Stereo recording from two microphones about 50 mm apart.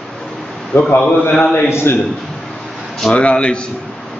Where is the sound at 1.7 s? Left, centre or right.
Left.